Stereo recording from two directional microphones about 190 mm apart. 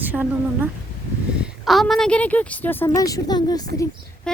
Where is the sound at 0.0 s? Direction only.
10° right (ahead or behind); by 3.7 s 20° left (ahead or behind).